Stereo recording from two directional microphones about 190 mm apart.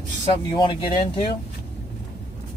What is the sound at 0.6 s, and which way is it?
Speech, 25° left (ahead or behind).